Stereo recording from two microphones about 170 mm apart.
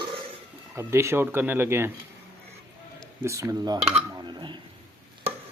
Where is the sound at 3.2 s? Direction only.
15° right (ahead or behind).